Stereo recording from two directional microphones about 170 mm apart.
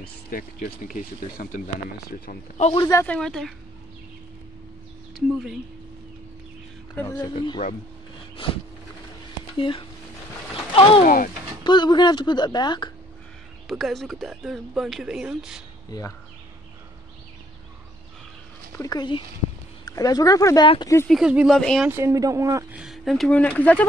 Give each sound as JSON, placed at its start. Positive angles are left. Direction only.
{"t": 0.0, "sound": "speech", "side_deg": 60}
{"t": 2.5, "sound": "a man's voice", "side_deg": 40}
{"t": 2.8, "sound": "speech", "side_deg": 20}
{"t": 3.1, "sound": "speech", "side_deg": 5}
{"t": 7.0, "sound": "speech", "side_deg": 20}
{"t": 9.6, "sound": "a man's voice", "side_deg": 30}
{"t": 13.7, "sound": "speech", "side_deg": 0}
{"t": 18.8, "sound": "speech", "side_deg": 25}
{"t": 21.1, "sound": "speech", "side_deg": -5}
{"t": 21.8, "sound": "speech", "side_deg": -15}
{"t": 22.8, "sound": "speech", "side_deg": 0}